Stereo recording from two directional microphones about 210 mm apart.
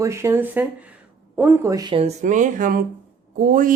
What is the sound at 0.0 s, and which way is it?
Speech, 15° right (ahead or behind).